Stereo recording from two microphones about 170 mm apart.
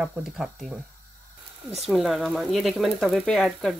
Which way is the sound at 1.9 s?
Centre (ahead or behind).